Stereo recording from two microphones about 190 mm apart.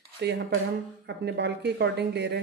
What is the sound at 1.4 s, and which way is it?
A woman's voice, 60° right (ahead or behind).